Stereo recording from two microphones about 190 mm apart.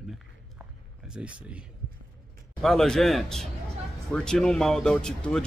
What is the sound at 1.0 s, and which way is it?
Speech, 5° right (ahead or behind).